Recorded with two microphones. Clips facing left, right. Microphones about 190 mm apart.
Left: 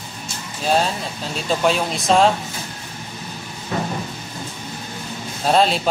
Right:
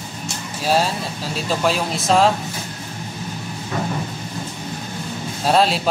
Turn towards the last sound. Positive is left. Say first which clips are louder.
# even
turn(degrees=0)  # may be behind; listen again after turning